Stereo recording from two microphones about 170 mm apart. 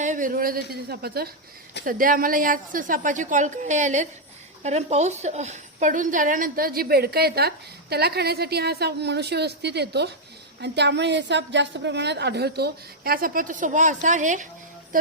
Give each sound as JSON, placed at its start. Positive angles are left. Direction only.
{"t": 0.0, "sound": "speech", "side_deg": -50}
{"t": 1.8, "sound": "a woman's voice", "side_deg": -55}
{"t": 10.6, "sound": "a woman's voice", "side_deg": -85}